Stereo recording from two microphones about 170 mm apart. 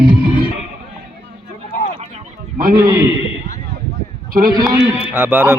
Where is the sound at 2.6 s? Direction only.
55° right (ahead or behind).